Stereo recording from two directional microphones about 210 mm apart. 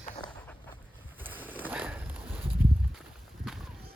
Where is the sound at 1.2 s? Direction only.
10° right (ahead or behind).